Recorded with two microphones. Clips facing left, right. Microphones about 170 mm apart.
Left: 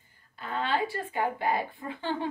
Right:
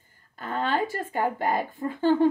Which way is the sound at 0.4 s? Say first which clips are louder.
Right 3 dB; 45° right (ahead or behind).